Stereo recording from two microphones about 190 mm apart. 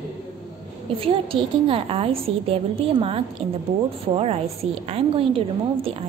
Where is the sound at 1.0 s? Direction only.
30° right (ahead or behind).